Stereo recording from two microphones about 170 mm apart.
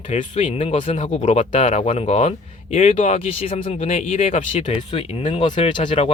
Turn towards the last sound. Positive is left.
turn(degrees=30)  # may be behind; listen again after turning